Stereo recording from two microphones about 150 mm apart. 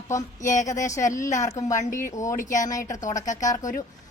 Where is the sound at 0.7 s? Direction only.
20° left (ahead or behind).